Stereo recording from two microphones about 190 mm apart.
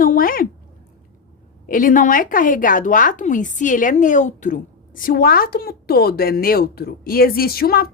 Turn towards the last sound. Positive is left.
turn(degrees=50)  # may be behind; listen again after turning